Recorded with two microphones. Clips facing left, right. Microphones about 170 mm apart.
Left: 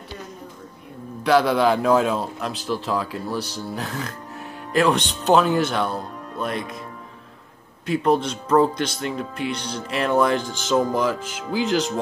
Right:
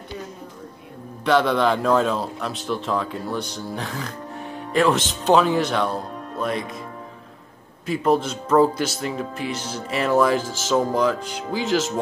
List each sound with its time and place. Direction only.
1.2 s speech: 5° left (ahead or behind)
7.8 s speech: centre (ahead or behind)